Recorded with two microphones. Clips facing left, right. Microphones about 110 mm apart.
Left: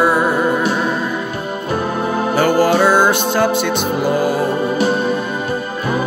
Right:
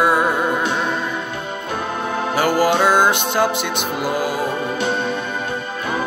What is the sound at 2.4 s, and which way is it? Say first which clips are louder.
Music: left 3 dB; 10° right (ahead or behind).